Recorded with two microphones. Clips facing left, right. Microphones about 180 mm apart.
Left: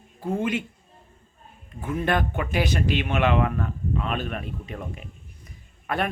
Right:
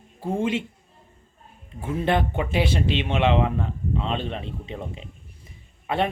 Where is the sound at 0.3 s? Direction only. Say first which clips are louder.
Right 1 dB; 25° right (ahead or behind).